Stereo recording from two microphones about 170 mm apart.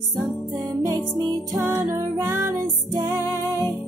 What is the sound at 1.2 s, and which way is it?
Music, 20° right (ahead or behind).